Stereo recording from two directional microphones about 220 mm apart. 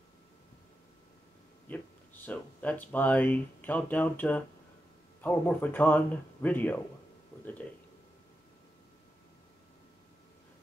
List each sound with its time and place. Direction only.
1.7 s speech: 5° left (ahead or behind)